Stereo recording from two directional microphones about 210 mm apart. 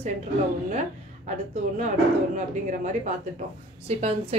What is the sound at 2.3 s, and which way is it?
A woman's voice, 35° right (ahead or behind).